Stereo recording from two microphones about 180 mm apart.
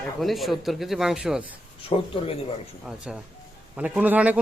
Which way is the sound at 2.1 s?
30° left (ahead or behind).